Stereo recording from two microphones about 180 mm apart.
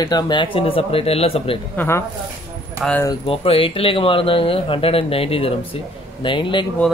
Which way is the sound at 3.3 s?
30° left (ahead or behind).